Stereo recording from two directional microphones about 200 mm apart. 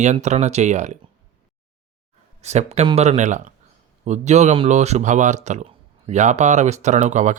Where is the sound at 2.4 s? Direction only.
35° right (ahead or behind).